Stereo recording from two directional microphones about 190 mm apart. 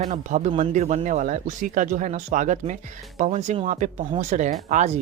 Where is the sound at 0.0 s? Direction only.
40° right (ahead or behind).